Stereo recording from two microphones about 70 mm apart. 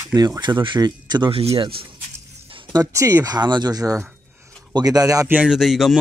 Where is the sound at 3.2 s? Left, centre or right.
Right.